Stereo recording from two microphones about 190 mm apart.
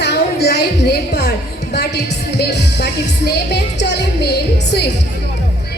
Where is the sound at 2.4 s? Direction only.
60° left (ahead or behind).